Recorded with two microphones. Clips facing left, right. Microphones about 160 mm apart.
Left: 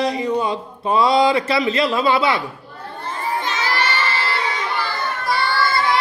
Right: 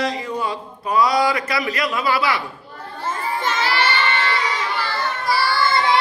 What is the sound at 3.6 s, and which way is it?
Crowd, 35° left (ahead or behind).